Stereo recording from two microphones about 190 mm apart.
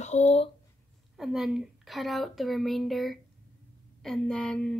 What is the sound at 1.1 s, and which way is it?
A woman's voice, centre (ahead or behind).